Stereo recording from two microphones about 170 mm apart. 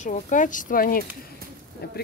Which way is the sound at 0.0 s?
45° left (ahead or behind).